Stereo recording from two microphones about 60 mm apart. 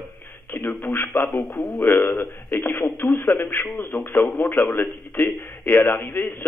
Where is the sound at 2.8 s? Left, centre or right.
Left.